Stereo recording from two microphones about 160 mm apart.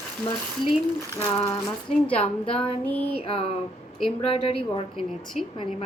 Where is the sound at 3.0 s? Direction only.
35° left (ahead or behind).